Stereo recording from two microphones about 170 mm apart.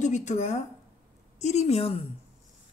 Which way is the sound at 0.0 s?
45° left (ahead or behind).